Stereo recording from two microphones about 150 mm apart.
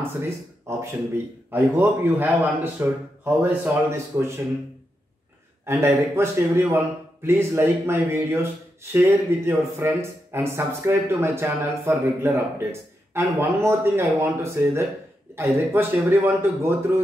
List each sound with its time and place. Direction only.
0.2 s speech: 15° right (ahead or behind)
5.7 s speech: 15° right (ahead or behind)